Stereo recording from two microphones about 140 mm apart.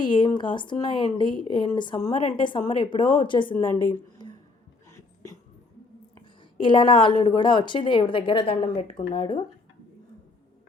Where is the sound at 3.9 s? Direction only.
35° left (ahead or behind).